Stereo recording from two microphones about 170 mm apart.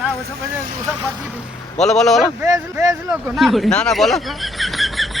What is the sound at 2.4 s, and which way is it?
Speech, 20° right (ahead or behind).